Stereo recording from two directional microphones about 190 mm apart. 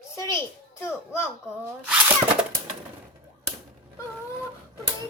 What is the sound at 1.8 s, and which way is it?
Speech, 5° right (ahead or behind).